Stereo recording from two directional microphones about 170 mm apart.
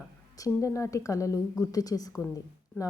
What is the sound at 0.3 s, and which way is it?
A woman's voice, 20° left (ahead or behind).